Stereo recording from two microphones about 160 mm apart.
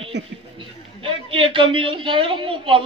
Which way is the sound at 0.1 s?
90° right.